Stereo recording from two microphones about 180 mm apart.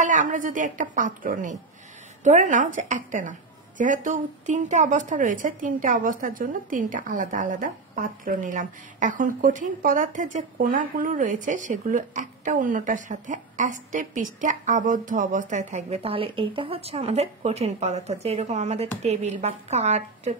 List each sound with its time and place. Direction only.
0.0 s a woman's voice: 45° right (ahead or behind)